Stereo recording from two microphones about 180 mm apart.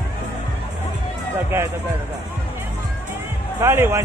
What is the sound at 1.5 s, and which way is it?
Speech, 10° right (ahead or behind).